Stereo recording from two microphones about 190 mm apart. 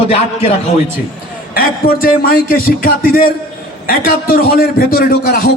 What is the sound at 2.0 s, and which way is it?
A man's voice, 50° left (ahead or behind).